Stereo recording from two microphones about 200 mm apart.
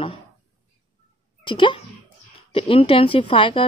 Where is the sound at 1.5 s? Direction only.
25° left (ahead or behind).